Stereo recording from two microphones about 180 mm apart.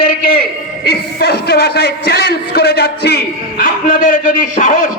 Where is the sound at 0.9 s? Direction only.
65° left (ahead or behind).